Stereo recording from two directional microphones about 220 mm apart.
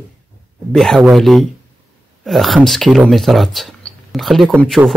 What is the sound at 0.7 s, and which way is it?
Speech, centre (ahead or behind).